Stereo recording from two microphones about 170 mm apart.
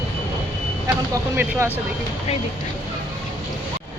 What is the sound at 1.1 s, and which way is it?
Speech, 15° right (ahead or behind).